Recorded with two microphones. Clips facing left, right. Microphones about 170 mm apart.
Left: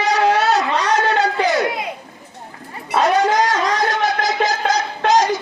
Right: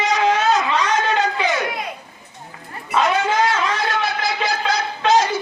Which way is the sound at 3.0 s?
40° left (ahead or behind).